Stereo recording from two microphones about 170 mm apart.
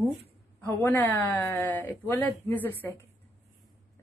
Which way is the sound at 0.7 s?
15° left (ahead or behind).